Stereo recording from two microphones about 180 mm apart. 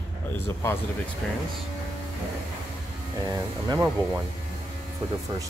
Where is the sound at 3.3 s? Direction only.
20° right (ahead or behind).